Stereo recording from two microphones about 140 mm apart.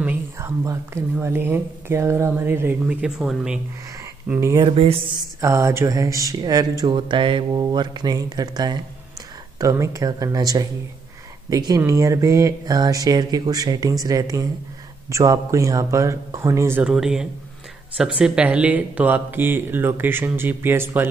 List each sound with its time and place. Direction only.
0.0 s whispering: 10° right (ahead or behind)
1.1 s speech: 15° right (ahead or behind)
4.3 s speech: 20° right (ahead or behind)
4.6 s a sound: 40° right (ahead or behind)
5.4 s speech: 20° right (ahead or behind)
16.8 s speech: 5° right (ahead or behind)